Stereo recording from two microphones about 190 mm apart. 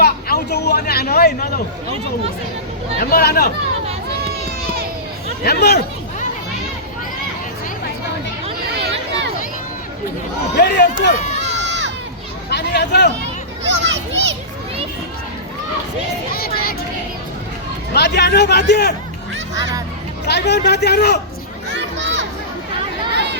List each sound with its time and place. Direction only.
0.0 s a sound: 55° left (ahead or behind)
3.0 s speech: 55° left (ahead or behind)
5.4 s a man's voice: 55° left (ahead or behind)
10.5 s a man's voice: 65° left (ahead or behind)
11.5 s crowd: 70° right (ahead or behind)
12.5 s a sound: 60° left (ahead or behind)
13.7 s speech: 70° right (ahead or behind)
16.3 s speech: 50° left (ahead or behind)
17.9 s a man's voice: 60° left (ahead or behind)
20.2 s a man's voice: 60° left (ahead or behind)
21.7 s children playing: 70° right (ahead or behind)
23.1 s chatter: 60° right (ahead or behind)